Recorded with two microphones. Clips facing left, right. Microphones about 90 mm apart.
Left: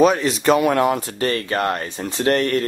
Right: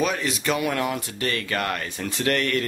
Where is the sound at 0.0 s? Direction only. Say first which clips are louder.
Left 9 dB; 30° left (ahead or behind).